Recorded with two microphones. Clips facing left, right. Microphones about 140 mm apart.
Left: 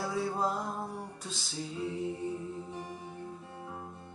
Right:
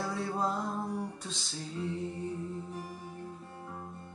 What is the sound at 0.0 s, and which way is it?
Music, centre (ahead or behind).